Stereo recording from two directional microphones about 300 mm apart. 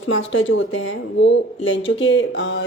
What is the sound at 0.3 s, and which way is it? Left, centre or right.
Speech, left.